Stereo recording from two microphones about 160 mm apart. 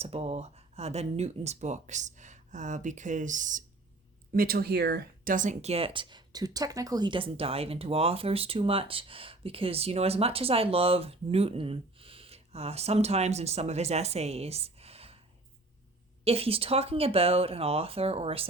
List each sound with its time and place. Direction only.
0.0 s speech: 40° right (ahead or behind)
4.4 s speech: 70° right (ahead or behind); by 15.2 s 40° right (ahead or behind)
16.2 s speech: 40° right (ahead or behind)